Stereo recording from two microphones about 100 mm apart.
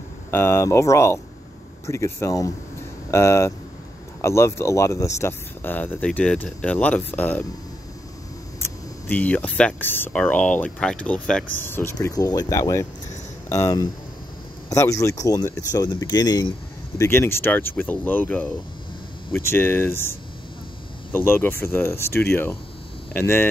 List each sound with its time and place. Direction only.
0.3 s speech: 25° left (ahead or behind)
9.0 s speech: 15° left (ahead or behind)
11.6 s speech: 25° left (ahead or behind)
12.1 s speech: 40° left (ahead or behind)
17.0 s speech: 25° left (ahead or behind)